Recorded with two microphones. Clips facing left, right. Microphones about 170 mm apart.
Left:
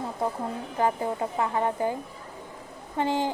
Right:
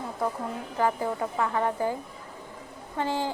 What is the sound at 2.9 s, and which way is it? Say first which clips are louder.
Speech: left 3 dB; 20° left (ahead or behind).